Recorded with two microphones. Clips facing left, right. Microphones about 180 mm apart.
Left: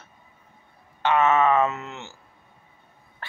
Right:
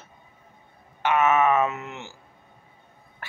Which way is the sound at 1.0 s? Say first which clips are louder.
Left 1 dB; 10° right (ahead or behind).